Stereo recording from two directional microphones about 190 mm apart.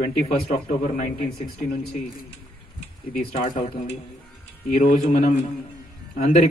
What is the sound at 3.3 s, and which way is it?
A man's voice, 35° left (ahead or behind).